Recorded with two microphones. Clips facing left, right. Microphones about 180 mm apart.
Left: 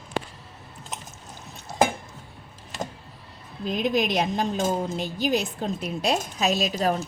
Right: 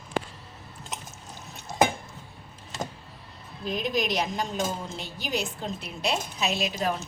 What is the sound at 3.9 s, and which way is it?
A woman's voice, 55° left (ahead or behind).